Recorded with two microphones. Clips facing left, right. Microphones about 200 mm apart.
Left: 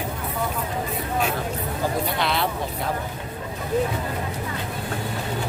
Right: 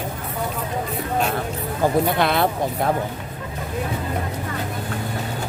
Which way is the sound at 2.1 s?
50° right (ahead or behind).